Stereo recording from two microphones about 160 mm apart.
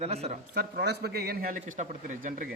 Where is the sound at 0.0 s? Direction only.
40° right (ahead or behind).